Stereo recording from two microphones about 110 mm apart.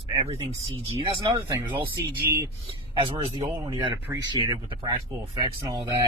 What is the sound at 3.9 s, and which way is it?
Speech, 25° right (ahead or behind).